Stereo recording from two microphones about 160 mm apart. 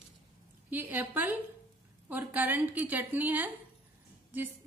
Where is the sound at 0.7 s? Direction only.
10° right (ahead or behind).